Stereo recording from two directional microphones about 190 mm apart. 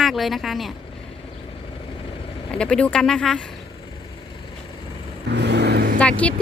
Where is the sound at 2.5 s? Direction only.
5° left (ahead or behind).